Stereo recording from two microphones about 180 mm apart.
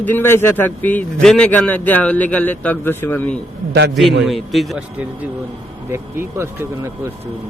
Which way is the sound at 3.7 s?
70° right (ahead or behind).